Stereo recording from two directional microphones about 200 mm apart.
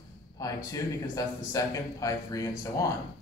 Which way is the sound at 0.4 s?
15° left (ahead or behind).